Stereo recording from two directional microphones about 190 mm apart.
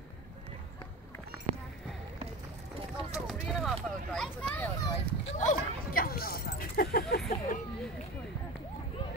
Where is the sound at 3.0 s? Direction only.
25° right (ahead or behind).